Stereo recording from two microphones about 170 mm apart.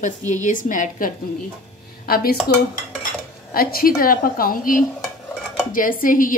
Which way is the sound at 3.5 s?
60° left (ahead or behind).